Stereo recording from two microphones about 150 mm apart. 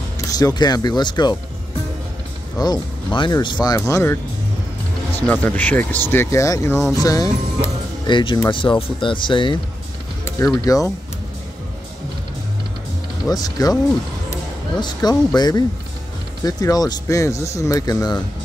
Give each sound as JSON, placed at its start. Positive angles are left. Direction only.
{"t": 0.3, "sound": "speech", "side_deg": 25}
{"t": 2.6, "sound": "speech", "side_deg": 30}
{"t": 5.1, "sound": "speech", "side_deg": 10}
{"t": 10.2, "sound": "speech", "side_deg": 20}
{"t": 13.3, "sound": "speech", "side_deg": 25}
{"t": 14.8, "sound": "speech", "side_deg": 25}